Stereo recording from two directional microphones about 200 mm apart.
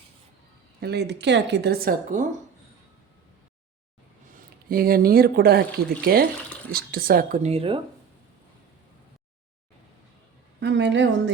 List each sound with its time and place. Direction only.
0.8 s a woman's voice: 55° right (ahead or behind)
4.3 s speech: 45° right (ahead or behind); by 7.8 s 30° right (ahead or behind)
10.6 s a woman's voice: 60° right (ahead or behind)